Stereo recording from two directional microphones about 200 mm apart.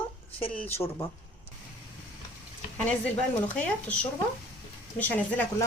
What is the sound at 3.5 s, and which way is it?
Speech, 5° left (ahead or behind).